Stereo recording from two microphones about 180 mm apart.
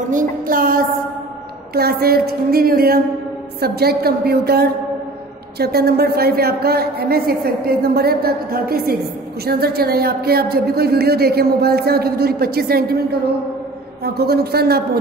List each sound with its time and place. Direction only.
0.1 s music: 50° right (ahead or behind)
1.7 s a woman's voice: 60° right (ahead or behind)
14.0 s a woman's voice: 60° right (ahead or behind)